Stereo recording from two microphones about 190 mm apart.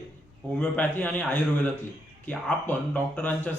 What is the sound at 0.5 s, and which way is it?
Speech, 10° left (ahead or behind).